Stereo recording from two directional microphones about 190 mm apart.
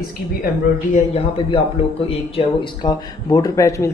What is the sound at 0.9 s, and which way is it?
A man's voice, 35° left (ahead or behind).